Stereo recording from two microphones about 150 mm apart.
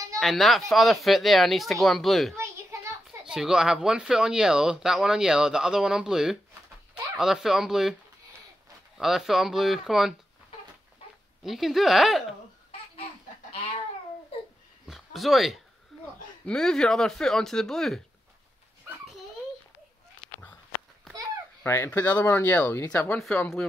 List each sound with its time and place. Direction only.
0.2 s speech: centre (ahead or behind)
2.3 s a sound: 15° right (ahead or behind)
3.3 s speech: 5° right (ahead or behind)
8.9 s speech: centre (ahead or behind)
11.4 s speech: centre (ahead or behind)
14.9 s a sound: centre (ahead or behind)
16.4 s speech: 5° left (ahead or behind)
21.6 s speech: 15° left (ahead or behind)